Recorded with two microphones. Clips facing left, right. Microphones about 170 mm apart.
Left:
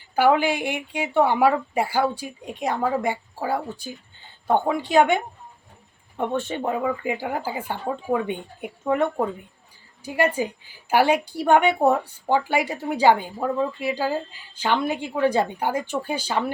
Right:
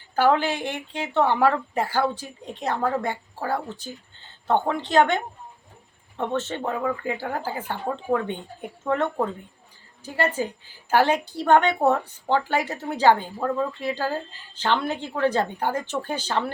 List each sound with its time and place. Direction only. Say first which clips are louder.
0.2 s a woman's voice: left 2 dB; 10° left (ahead or behind)